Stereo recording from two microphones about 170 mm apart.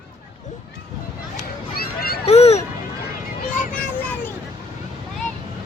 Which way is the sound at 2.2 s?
35° left (ahead or behind).